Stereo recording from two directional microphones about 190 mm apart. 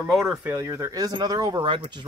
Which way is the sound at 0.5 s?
15° right (ahead or behind).